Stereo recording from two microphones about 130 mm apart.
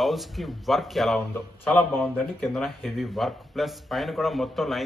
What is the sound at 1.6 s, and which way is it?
A man's voice, 10° left (ahead or behind).